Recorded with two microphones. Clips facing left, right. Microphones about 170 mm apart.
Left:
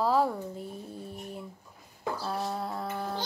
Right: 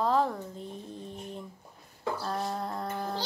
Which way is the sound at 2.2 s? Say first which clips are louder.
Left 1 dB; 5° left (ahead or behind).